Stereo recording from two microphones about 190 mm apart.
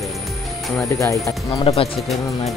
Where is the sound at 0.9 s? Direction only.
15° left (ahead or behind).